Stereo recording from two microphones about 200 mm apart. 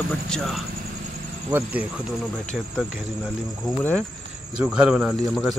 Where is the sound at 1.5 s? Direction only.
10° right (ahead or behind).